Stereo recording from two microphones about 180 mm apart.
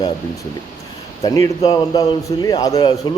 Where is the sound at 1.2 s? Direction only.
20° left (ahead or behind).